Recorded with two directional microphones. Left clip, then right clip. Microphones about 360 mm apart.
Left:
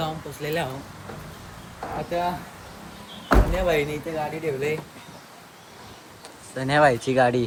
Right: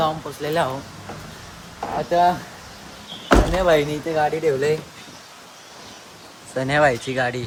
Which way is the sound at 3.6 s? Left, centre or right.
Centre.